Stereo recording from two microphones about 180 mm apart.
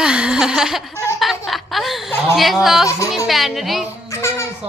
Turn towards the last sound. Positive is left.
turn(degrees=15)  # may be behind; listen again after turning